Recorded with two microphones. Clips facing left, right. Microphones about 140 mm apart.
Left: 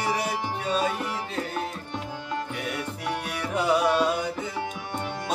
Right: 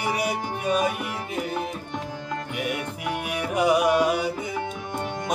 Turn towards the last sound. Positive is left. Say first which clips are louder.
# right 2 dB
turn(degrees=-10)  # may be behind; listen again after turning